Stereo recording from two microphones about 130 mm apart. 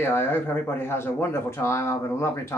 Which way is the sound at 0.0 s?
15° left (ahead or behind).